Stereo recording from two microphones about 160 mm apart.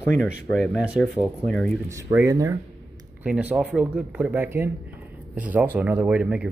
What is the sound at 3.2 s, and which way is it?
Speech, 10° right (ahead or behind).